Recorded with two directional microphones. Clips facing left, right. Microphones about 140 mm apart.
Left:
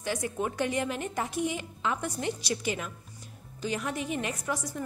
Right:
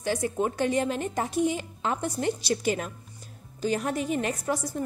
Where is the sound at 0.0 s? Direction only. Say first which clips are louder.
Right 4 dB; 30° right (ahead or behind).